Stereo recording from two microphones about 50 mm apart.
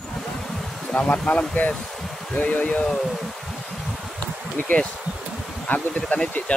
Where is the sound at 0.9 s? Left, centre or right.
Left.